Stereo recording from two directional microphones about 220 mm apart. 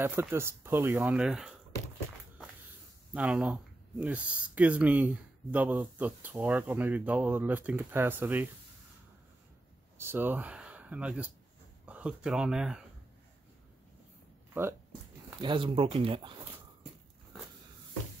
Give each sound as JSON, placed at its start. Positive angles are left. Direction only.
{"t": 0.0, "sound": "speech", "side_deg": -10}
{"t": 3.2, "sound": "speech", "side_deg": -5}
{"t": 9.9, "sound": "speech", "side_deg": -10}
{"t": 14.5, "sound": "speech", "side_deg": -10}
{"t": 15.4, "sound": "speech", "side_deg": -25}